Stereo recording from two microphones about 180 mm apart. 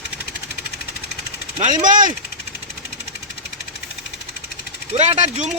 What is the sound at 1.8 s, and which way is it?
Speech, 50° right (ahead or behind).